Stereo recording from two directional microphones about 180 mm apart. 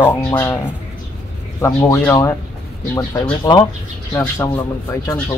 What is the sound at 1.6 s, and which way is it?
Speech, 15° left (ahead or behind).